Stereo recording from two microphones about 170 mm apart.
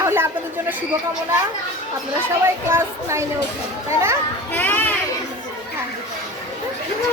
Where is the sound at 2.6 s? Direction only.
15° right (ahead or behind).